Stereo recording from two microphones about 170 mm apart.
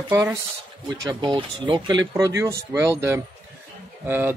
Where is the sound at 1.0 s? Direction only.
30° right (ahead or behind).